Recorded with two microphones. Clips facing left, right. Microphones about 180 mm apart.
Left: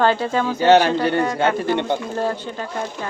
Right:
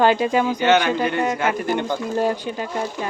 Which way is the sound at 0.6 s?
35° left (ahead or behind).